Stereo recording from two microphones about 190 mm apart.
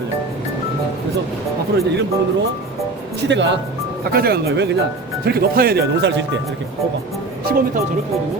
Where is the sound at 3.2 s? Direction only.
70° right (ahead or behind).